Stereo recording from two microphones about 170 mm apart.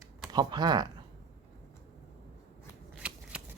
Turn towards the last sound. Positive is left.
turn(degrees=-10)  # may be behind; listen again after turning